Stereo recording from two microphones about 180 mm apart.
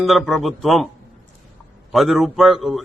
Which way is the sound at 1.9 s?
Centre (ahead or behind).